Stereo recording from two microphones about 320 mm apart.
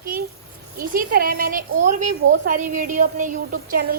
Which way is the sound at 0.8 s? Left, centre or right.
Right.